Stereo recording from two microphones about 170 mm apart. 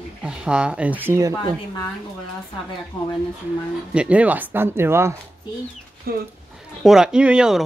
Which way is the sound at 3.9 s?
5° right (ahead or behind).